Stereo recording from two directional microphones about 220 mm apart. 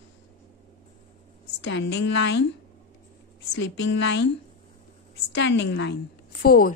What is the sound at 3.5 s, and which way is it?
Speech, 55° left (ahead or behind).